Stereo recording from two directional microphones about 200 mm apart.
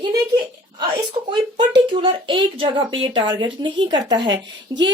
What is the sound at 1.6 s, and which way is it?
Speech, 25° right (ahead or behind).